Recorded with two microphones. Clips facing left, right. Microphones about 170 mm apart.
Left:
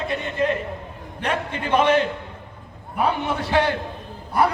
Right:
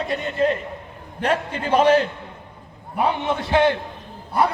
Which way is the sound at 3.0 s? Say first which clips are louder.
Right 1 dB; 25° right (ahead or behind).